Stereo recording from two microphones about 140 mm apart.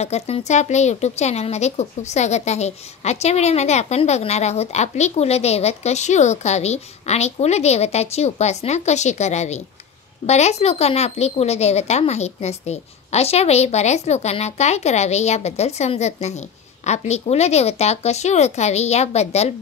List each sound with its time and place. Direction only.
0.0 s speech: 50° left (ahead or behind)